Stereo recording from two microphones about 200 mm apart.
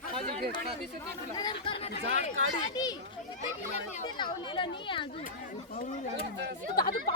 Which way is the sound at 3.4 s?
35° left (ahead or behind).